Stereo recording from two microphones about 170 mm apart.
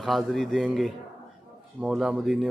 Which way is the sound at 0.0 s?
Centre (ahead or behind).